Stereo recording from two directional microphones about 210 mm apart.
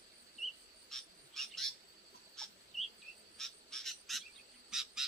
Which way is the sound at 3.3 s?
Centre (ahead or behind).